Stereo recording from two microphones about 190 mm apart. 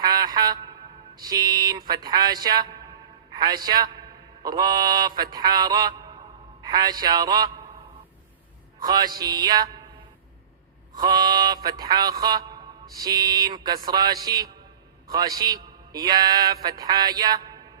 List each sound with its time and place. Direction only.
0.0 s a sound: 20° right (ahead or behind)
1.1 s mantra: 20° right (ahead or behind)
9.1 s mantra: 20° right (ahead or behind)
10.9 s mantra: 20° right (ahead or behind)